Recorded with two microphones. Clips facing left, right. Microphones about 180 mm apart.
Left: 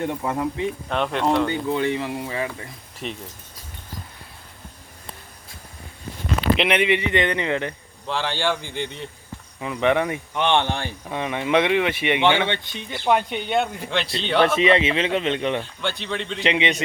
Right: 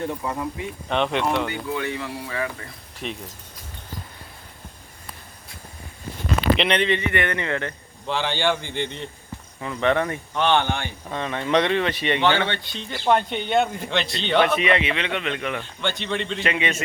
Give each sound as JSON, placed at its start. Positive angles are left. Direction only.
{"t": 0.0, "sound": "speech", "side_deg": 25}
{"t": 0.9, "sound": "a man's voice", "side_deg": 5}
{"t": 1.5, "sound": "speech", "side_deg": 25}
{"t": 3.0, "sound": "a man's voice", "side_deg": 0}
{"t": 6.6, "sound": "speech", "side_deg": 5}
{"t": 8.0, "sound": "a man's voice", "side_deg": 0}
{"t": 9.6, "sound": "speech", "side_deg": 15}
{"t": 11.1, "sound": "a man's voice", "side_deg": 15}
{"t": 14.5, "sound": "speech", "side_deg": 30}
{"t": 15.8, "sound": "a man's voice", "side_deg": 0}
{"t": 16.4, "sound": "speech", "side_deg": 20}